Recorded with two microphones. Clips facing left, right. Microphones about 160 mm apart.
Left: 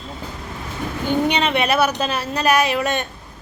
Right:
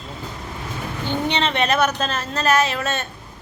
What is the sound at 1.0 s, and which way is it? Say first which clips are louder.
A woman's voice: left 3 dB; 10° left (ahead or behind).